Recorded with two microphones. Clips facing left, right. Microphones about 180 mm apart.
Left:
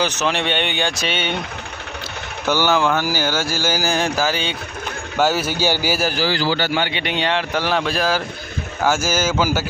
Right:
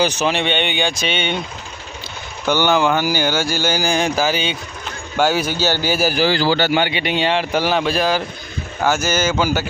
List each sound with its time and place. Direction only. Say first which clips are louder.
0.0 s a man's voice: right 3 dB; 10° right (ahead or behind)
0.3 s speech: right 2 dB; centre (ahead or behind)
2.5 s a man's voice: right 2 dB; 5° left (ahead or behind)
6.1 s a man's voice: right 4 dB; 25° right (ahead or behind)
6.7 s a man's voice: right 3 dB; 10° right (ahead or behind); by 9.6 s 5° left (ahead or behind)